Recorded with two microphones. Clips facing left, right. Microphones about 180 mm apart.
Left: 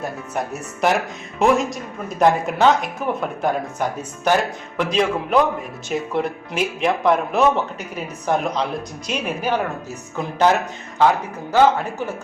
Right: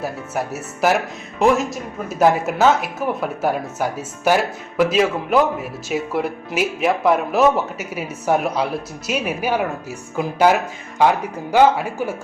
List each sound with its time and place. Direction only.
0.0 s speech: 5° right (ahead or behind)